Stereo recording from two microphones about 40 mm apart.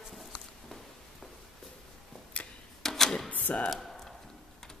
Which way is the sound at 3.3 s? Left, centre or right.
Left.